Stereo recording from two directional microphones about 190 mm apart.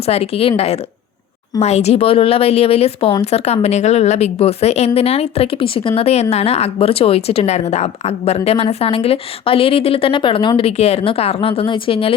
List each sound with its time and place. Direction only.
0.0 s speech: 30° left (ahead or behind)